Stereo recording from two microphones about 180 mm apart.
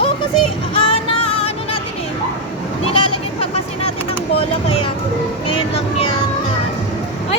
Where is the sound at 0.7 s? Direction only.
30° left (ahead or behind).